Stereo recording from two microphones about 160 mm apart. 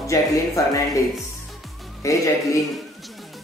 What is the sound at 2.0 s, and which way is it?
Speech, 20° left (ahead or behind).